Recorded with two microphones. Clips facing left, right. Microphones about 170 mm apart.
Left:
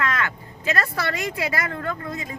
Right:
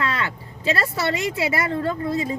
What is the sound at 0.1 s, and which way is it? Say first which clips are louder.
Speech: even; 30° right (ahead or behind).